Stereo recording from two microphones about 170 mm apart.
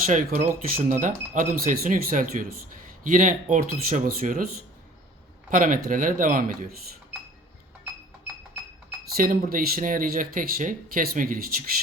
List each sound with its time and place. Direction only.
0.0 s speech: 55° right (ahead or behind)
5.5 s speech: 50° right (ahead or behind)
9.1 s speech: 55° right (ahead or behind)